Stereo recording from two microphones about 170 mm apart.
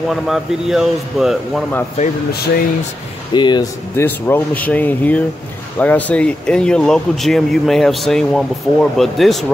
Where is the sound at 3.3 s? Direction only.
25° left (ahead or behind).